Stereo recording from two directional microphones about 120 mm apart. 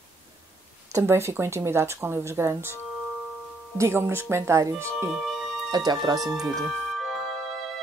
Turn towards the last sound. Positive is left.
turn(degrees=0)  # may be behind; listen again after turning